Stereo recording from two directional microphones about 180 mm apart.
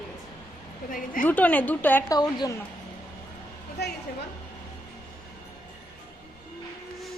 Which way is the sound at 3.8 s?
65° left (ahead or behind).